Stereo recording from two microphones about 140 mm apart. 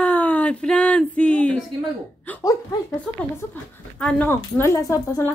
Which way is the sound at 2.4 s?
25° left (ahead or behind).